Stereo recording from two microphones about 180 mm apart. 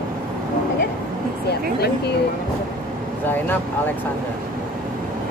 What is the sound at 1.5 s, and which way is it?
Speech, 65° left (ahead or behind).